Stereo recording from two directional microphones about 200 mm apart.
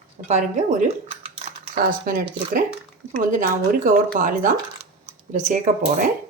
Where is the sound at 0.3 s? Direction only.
40° right (ahead or behind).